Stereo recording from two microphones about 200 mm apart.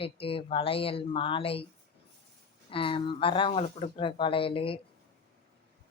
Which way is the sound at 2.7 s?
25° left (ahead or behind).